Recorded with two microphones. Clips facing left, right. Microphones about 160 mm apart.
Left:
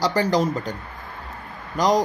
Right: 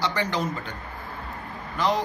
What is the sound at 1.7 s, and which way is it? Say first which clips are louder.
Speech: left 5 dB; 40° left (ahead or behind).